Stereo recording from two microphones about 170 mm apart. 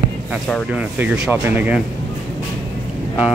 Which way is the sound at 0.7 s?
10° right (ahead or behind).